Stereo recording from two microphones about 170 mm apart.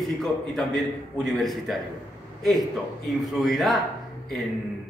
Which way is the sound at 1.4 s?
Centre (ahead or behind).